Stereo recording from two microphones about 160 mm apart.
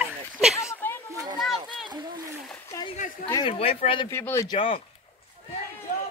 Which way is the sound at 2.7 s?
20° left (ahead or behind).